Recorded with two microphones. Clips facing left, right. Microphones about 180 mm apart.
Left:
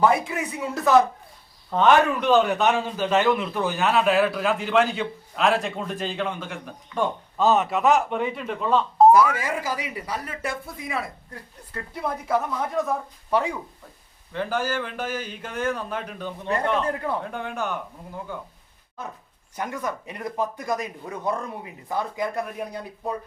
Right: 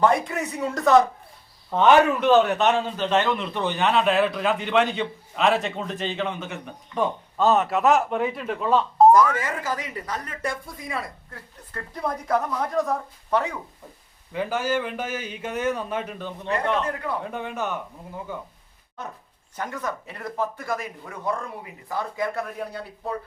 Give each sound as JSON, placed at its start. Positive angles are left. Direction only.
{"t": 0.0, "sound": "a man's voice", "side_deg": 5}
{"t": 16.8, "sound": "a man's voice", "side_deg": 30}
{"t": 17.2, "sound": "a man's voice", "side_deg": 0}
{"t": 19.5, "sound": "speech", "side_deg": 10}